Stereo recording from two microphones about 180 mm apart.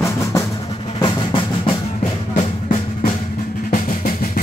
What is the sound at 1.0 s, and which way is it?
Drum, 30° left (ahead or behind).